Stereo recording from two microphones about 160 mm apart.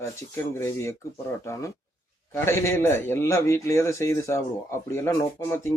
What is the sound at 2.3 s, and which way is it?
A man's voice, 15° left (ahead or behind).